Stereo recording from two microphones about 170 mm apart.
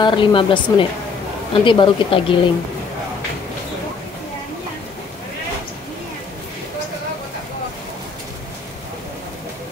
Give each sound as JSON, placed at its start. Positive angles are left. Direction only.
{"t": 0.0, "sound": "speech", "side_deg": 30}